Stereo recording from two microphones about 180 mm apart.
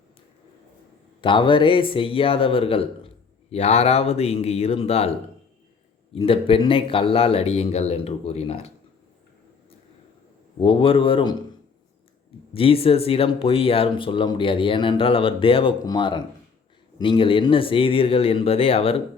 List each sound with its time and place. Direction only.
1.2 s speech: 25° left (ahead or behind)
6.1 s speech: 30° left (ahead or behind)
10.6 s speech: 30° left (ahead or behind)
12.5 s speech: 30° left (ahead or behind)